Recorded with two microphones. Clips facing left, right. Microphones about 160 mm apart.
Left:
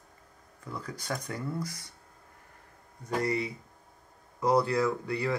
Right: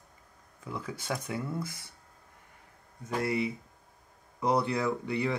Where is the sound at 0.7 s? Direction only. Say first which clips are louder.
Right 1 dB; 5° right (ahead or behind).